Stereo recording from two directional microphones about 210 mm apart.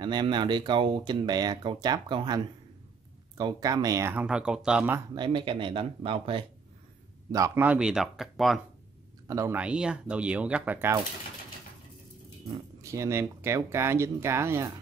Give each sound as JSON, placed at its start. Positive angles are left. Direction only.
{"t": 0.0, "sound": "speech", "side_deg": -20}
{"t": 5.1, "sound": "speech", "side_deg": -25}
{"t": 7.2, "sound": "speech", "side_deg": -15}
{"t": 9.3, "sound": "speech", "side_deg": -10}
{"t": 12.8, "sound": "speech", "side_deg": -15}